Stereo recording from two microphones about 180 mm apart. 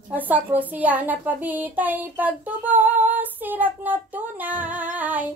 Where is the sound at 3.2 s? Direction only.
10° right (ahead or behind).